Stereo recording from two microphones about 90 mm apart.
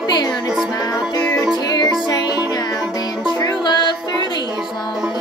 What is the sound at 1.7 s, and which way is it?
Music, 55° left (ahead or behind).